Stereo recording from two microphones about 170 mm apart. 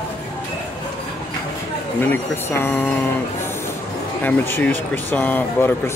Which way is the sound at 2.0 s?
15° left (ahead or behind).